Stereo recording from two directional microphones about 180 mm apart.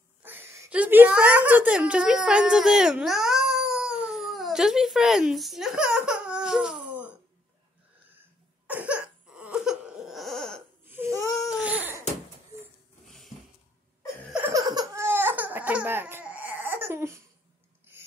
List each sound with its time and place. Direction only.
0.2 s a woman's voice: 10° right (ahead or behind)
8.6 s a sound: 5° right (ahead or behind)
10.9 s crying: 10° right (ahead or behind)
11.1 s baby cry: 15° left (ahead or behind)
11.5 s baby cry: 5° right (ahead or behind)
12.5 s a sound: 35° right (ahead or behind)
14.5 s crying: 20° right (ahead or behind)